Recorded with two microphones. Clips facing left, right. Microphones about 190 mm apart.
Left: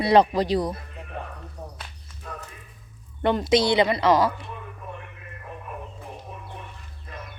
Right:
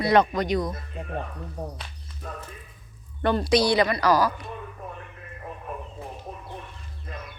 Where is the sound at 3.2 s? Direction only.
20° left (ahead or behind).